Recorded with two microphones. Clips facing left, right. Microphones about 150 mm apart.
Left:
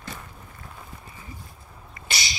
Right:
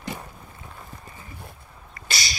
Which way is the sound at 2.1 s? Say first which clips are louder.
Right 1 dB; 20° left (ahead or behind).